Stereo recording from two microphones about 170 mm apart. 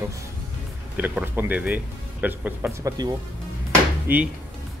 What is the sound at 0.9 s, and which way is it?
Speech, 10° right (ahead or behind).